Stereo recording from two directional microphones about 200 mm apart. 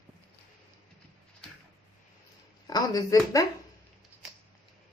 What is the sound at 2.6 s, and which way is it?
Speech, 20° left (ahead or behind).